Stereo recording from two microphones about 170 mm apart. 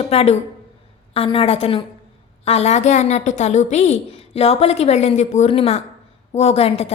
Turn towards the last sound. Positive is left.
turn(degrees=35)  # may be behind; listen again after turning